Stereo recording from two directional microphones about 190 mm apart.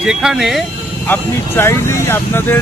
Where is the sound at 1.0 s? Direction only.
10° left (ahead or behind).